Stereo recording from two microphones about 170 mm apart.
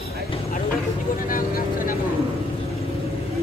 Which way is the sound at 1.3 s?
55° left (ahead or behind).